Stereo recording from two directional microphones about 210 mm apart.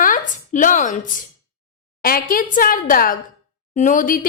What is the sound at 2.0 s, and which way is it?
A woman's voice, 40° left (ahead or behind).